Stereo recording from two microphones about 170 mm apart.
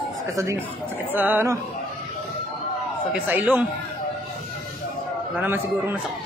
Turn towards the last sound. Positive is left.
turn(degrees=-10)  # may be behind; listen again after turning